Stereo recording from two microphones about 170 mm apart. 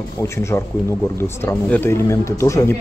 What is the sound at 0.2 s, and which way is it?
Speech, 15° left (ahead or behind).